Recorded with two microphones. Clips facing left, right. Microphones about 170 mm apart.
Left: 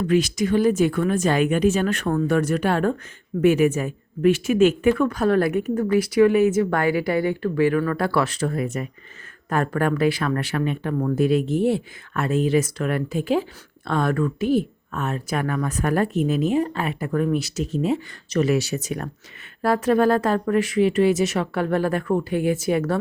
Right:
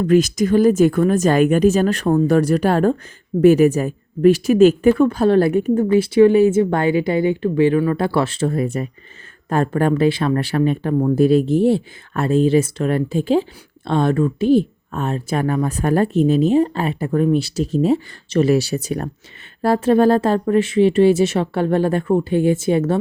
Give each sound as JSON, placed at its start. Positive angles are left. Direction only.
{"t": 0.0, "sound": "speech", "side_deg": -45}